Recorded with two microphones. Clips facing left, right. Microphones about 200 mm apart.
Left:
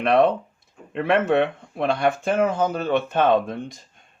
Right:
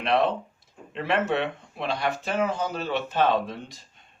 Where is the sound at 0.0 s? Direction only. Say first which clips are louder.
Left 6 dB; 55° left (ahead or behind).